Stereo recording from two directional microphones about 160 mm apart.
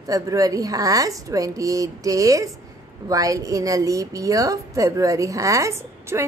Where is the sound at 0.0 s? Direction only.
20° right (ahead or behind).